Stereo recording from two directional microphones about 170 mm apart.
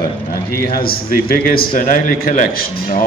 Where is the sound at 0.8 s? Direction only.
60° left (ahead or behind).